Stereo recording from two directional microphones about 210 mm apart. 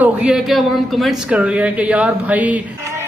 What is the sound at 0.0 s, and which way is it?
A man's voice, 5° right (ahead or behind).